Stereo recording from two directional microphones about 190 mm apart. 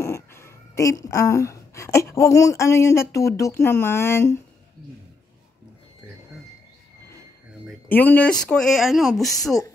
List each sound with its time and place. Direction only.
0.0 s speech: 15° left (ahead or behind)
7.9 s speech: 10° left (ahead or behind)